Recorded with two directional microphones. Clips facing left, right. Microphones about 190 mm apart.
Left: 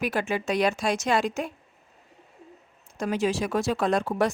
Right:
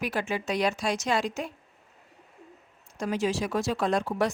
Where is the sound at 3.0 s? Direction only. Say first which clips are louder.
Left 2 dB; 55° left (ahead or behind).